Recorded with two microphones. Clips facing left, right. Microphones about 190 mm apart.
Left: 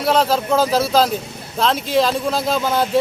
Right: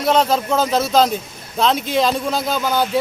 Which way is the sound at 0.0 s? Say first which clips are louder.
Even; 5° left (ahead or behind).